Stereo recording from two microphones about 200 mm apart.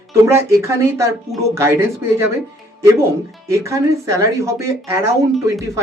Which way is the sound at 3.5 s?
15° right (ahead or behind).